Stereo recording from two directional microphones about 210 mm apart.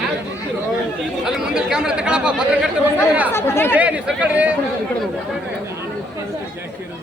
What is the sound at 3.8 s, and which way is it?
Speech, 5° right (ahead or behind).